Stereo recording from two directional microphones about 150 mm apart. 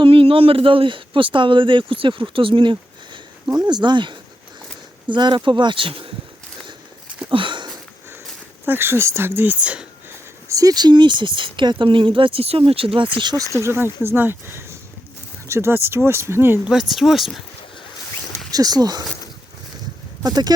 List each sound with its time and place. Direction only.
0.0 s speech: 35° right (ahead or behind)
7.3 s sniff: 35° right (ahead or behind)
8.6 s speech: 15° right (ahead or behind)
10.5 s speech: 25° right (ahead or behind)
16.9 s speech: centre (ahead or behind)
18.5 s speech: 25° right (ahead or behind)
20.2 s speech: 25° right (ahead or behind)